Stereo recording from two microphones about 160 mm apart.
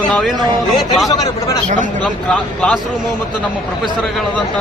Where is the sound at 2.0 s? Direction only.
5° left (ahead or behind).